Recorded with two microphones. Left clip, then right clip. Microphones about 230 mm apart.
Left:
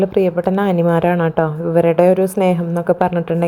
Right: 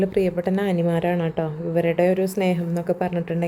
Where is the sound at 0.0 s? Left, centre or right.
Centre.